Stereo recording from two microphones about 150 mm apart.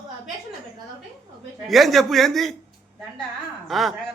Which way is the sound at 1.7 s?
Centre (ahead or behind).